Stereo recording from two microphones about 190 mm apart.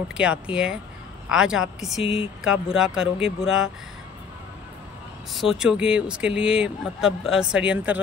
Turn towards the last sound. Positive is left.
turn(degrees=-5)  # may be behind; listen again after turning